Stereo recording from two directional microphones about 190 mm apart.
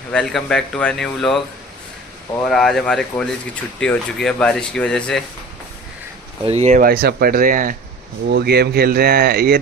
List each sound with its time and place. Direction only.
0.1 s speech: 5° left (ahead or behind)
2.4 s speech: centre (ahead or behind)
6.4 s speech: 35° right (ahead or behind)
6.8 s speech: 50° right (ahead or behind)
8.3 s speech: 60° right (ahead or behind)